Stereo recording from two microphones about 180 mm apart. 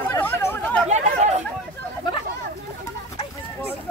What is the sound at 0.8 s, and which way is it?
Chatter, 40° right (ahead or behind).